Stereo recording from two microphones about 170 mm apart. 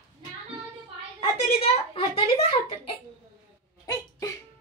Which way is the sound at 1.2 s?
35° left (ahead or behind).